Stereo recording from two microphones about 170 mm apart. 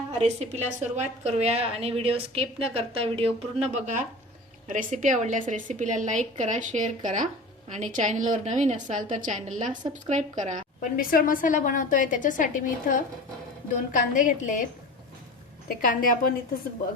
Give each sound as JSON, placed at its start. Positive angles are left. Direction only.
{"t": 0.2, "sound": "a woman's voice", "side_deg": -40}
{"t": 10.9, "sound": "a woman's voice", "side_deg": 55}
{"t": 15.8, "sound": "a woman's voice", "side_deg": 50}